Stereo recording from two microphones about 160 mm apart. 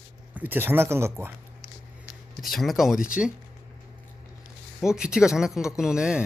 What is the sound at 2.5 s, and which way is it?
Speech, centre (ahead or behind).